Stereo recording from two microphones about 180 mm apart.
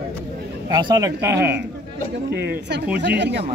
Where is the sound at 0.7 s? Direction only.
25° right (ahead or behind).